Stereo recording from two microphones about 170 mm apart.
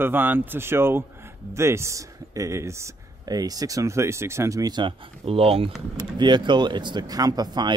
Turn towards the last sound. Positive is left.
turn(degrees=-25)  # may be behind; listen again after turning